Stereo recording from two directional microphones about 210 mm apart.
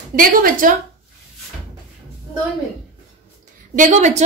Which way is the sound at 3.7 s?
35° right (ahead or behind).